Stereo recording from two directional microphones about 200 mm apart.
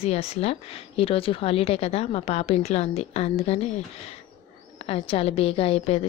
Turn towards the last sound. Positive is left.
turn(degrees=30)  # may be behind; listen again after turning